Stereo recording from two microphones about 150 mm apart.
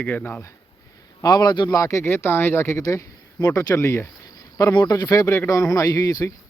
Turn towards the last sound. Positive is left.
turn(degrees=25)  # may be behind; listen again after turning